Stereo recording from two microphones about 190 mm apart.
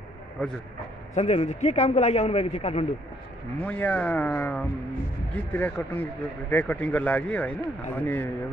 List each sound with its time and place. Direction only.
1.1 s a man's voice: 35° left (ahead or behind)
3.6 s speech: 10° left (ahead or behind)